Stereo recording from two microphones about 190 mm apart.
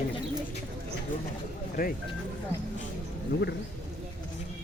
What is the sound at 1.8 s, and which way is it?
Speech, 45° left (ahead or behind).